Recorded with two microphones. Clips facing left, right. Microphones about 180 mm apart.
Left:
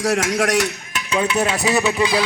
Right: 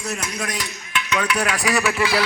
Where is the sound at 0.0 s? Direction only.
90° left.